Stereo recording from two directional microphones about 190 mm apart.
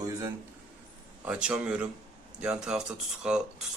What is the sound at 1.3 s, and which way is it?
Speech, 5° right (ahead or behind).